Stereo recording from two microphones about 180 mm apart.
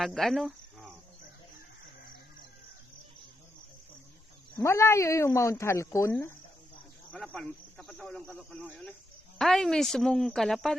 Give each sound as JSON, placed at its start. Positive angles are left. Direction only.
{"t": 0.0, "sound": "cricket", "side_deg": 0}
{"t": 4.5, "sound": "speech", "side_deg": 15}
{"t": 7.1, "sound": "speech", "side_deg": 5}